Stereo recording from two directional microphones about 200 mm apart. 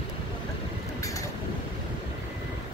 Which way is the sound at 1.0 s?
15° left (ahead or behind).